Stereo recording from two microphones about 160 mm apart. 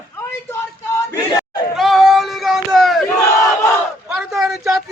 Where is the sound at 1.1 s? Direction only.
25° left (ahead or behind).